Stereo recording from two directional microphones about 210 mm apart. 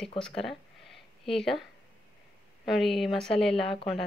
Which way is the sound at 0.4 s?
Centre (ahead or behind).